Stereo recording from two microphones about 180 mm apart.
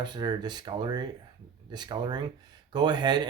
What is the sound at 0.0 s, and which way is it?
Speech, 25° right (ahead or behind).